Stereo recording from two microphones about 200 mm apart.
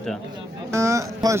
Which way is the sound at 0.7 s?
15° right (ahead or behind).